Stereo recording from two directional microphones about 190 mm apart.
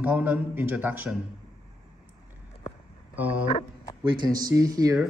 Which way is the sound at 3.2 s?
10° right (ahead or behind).